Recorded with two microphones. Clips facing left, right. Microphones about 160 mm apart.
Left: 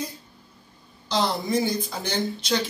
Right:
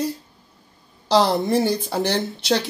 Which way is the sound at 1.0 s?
75° right (ahead or behind).